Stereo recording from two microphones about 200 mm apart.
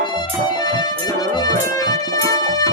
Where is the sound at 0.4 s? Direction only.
20° left (ahead or behind).